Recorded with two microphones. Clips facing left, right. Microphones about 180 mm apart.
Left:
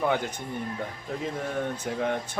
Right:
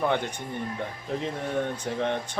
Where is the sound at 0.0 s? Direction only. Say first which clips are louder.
Even; 5° left (ahead or behind).